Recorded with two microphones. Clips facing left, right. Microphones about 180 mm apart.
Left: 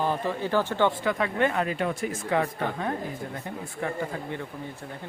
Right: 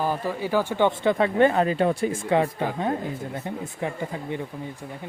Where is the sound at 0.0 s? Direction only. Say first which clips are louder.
Right 1 dB; 10° right (ahead or behind).